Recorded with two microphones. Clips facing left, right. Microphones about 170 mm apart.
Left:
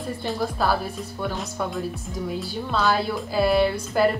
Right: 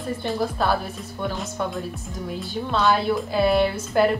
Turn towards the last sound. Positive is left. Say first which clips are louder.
# right 1 dB
turn(degrees=0)  # may be behind; listen again after turning